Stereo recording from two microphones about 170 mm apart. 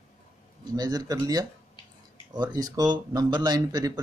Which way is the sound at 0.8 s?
20° right (ahead or behind).